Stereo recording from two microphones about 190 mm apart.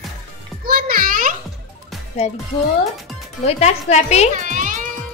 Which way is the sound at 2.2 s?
35° left (ahead or behind).